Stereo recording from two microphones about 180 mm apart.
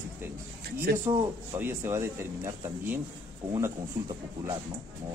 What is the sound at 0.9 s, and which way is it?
Speech, 60° right (ahead or behind).